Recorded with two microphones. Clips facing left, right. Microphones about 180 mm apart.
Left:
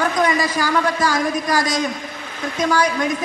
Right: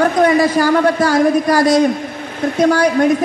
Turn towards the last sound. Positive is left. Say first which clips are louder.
# right 7 dB
turn(degrees=-60)  # may be behind; listen again after turning